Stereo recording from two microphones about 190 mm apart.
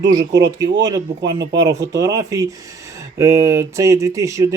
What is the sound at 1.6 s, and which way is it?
Speech, 15° right (ahead or behind).